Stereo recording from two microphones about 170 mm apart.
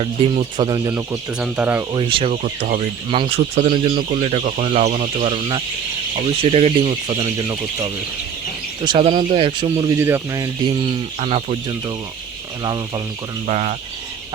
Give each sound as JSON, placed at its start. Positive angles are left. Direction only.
{"t": 0.0, "sound": "speech", "side_deg": -30}
{"t": 1.4, "sound": "speech", "side_deg": -10}
{"t": 1.9, "sound": "speech", "side_deg": -30}
{"t": 2.3, "sound": "speech", "side_deg": -50}
{"t": 3.1, "sound": "speech", "side_deg": -35}
{"t": 7.2, "sound": "speech", "side_deg": -20}
{"t": 8.8, "sound": "speech", "side_deg": -30}
{"t": 9.9, "sound": "speech", "side_deg": -15}
{"t": 11.2, "sound": "speech", "side_deg": -35}
{"t": 12.6, "sound": "speech", "side_deg": -25}
{"t": 13.5, "sound": "speech", "side_deg": -40}